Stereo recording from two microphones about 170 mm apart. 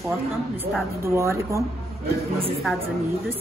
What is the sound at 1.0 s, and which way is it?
Speech, 15° right (ahead or behind).